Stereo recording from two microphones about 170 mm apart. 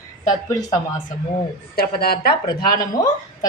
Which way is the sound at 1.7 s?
65° left (ahead or behind).